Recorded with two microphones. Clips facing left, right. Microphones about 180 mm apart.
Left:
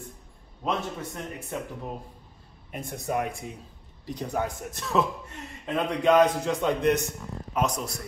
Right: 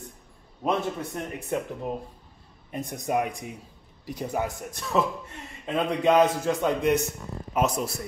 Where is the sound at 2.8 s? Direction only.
20° right (ahead or behind).